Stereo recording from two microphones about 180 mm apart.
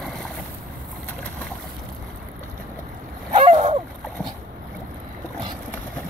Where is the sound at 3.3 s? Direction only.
40° right (ahead or behind).